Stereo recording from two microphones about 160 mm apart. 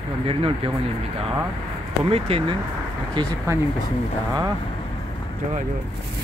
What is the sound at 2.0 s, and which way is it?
Speech, 40° right (ahead or behind).